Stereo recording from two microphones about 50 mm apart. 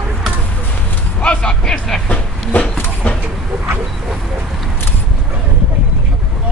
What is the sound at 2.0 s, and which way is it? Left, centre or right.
Speech, left.